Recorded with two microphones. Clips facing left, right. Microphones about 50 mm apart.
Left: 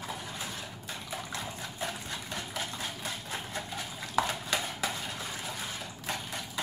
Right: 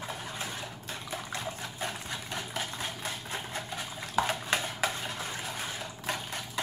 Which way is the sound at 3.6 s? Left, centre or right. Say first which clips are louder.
Right 1 dB; centre.